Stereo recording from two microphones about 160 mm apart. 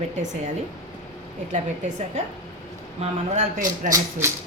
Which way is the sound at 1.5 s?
50° right (ahead or behind).